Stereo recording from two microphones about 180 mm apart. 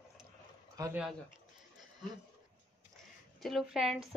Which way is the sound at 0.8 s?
20° right (ahead or behind).